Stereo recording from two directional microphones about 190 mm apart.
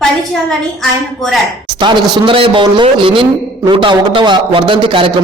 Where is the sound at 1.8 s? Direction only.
25° right (ahead or behind).